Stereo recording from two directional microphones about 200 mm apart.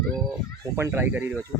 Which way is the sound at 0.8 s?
10° right (ahead or behind).